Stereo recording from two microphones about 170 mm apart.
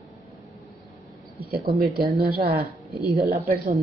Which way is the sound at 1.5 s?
65° right (ahead or behind).